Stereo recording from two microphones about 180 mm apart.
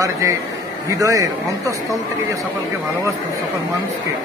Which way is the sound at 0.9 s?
20° right (ahead or behind).